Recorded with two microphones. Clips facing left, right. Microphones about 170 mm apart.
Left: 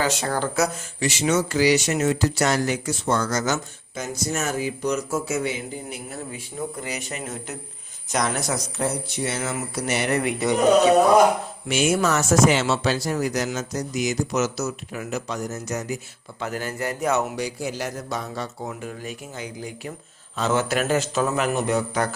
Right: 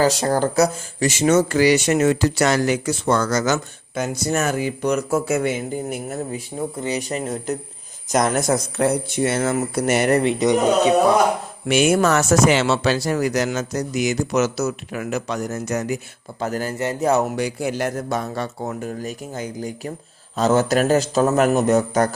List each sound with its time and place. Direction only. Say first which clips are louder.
0.0 s speech: right 6 dB; 40° right (ahead or behind)
6.8 s a man's voice: right 7 dB; 30° right (ahead or behind)
8.1 s speech: right 6 dB; 45° right (ahead or behind)
10.2 s a sound: right 5 dB; 20° right (ahead or behind)
11.7 s speech: right 5 dB; 60° right (ahead or behind)
16.4 s a man's voice: right 5 dB; 40° right (ahead or behind)
16.7 s a sound: right 4 dB; 25° right (ahead or behind)
17.3 s a man's voice: right 5 dB; 60° right (ahead or behind)